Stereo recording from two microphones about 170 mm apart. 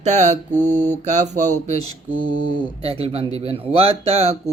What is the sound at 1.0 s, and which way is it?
Mantra, 45° right (ahead or behind).